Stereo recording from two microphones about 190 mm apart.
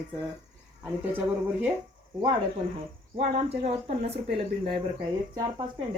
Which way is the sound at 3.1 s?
35° right (ahead or behind).